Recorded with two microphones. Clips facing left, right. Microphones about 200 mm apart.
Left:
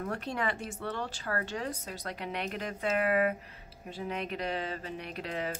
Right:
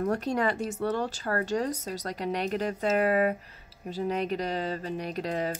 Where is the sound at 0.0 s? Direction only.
40° right (ahead or behind).